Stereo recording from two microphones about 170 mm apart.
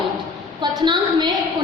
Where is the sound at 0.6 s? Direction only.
25° right (ahead or behind).